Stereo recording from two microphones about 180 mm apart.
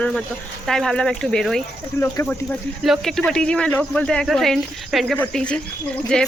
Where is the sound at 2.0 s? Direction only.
15° left (ahead or behind).